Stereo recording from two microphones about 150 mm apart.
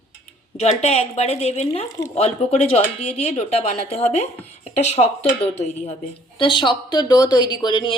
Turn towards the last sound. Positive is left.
turn(degrees=30)  # may be behind; listen again after turning